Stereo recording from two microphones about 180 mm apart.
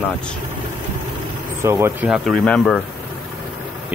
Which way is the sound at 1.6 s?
15° right (ahead or behind).